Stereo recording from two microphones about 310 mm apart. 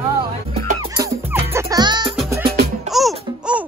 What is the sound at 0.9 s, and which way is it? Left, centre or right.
Music, centre.